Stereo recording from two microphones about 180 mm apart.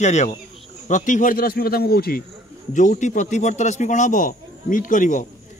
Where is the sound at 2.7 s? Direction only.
45° left (ahead or behind).